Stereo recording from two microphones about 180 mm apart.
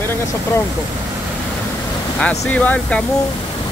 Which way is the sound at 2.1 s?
5° left (ahead or behind).